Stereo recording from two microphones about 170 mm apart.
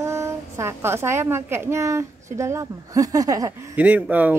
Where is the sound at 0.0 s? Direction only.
15° right (ahead or behind).